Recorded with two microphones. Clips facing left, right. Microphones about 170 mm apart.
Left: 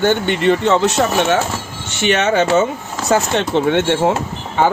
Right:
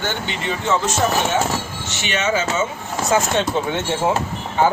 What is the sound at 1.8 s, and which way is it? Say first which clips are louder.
Speech: left 7 dB; 55° left (ahead or behind).